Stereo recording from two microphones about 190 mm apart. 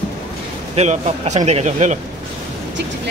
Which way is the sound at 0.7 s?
35° right (ahead or behind).